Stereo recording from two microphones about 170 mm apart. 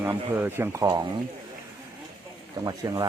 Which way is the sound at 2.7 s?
25° right (ahead or behind).